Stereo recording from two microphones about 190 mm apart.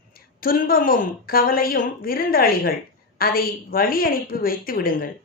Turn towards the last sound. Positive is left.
turn(degrees=50)  # may be behind; listen again after turning